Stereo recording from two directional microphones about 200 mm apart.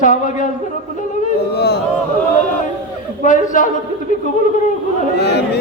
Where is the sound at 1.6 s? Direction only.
55° left (ahead or behind).